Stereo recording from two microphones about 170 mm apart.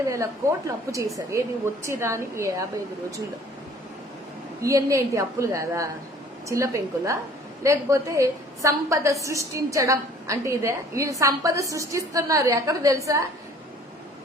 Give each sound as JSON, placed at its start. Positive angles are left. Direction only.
{"t": 0.1, "sound": "a woman's voice", "side_deg": -20}
{"t": 4.6, "sound": "a woman's voice", "side_deg": -20}